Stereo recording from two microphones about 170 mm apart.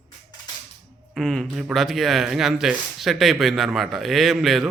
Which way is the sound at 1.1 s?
Centre (ahead or behind).